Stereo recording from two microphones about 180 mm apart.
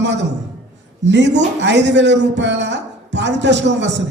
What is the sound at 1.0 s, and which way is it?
A man's voice, 80° right.